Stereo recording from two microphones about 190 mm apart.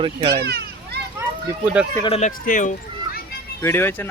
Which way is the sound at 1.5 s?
10° right (ahead or behind).